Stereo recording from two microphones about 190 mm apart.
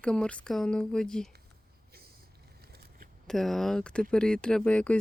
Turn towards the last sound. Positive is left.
turn(degrees=5)  # may be behind; listen again after turning